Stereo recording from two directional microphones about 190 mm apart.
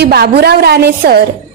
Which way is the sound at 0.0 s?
55° right (ahead or behind).